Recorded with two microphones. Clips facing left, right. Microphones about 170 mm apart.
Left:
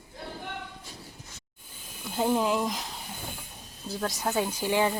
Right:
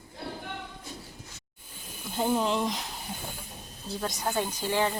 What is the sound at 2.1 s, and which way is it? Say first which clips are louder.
Speech: left 1 dB; 5° left (ahead or behind).